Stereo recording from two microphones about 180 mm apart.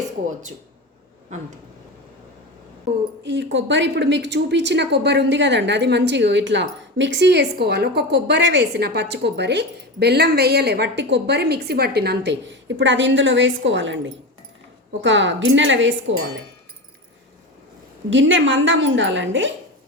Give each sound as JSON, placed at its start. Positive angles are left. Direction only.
{"t": 3.2, "sound": "a woman's voice", "side_deg": -80}
{"t": 18.1, "sound": "a woman's voice", "side_deg": -90}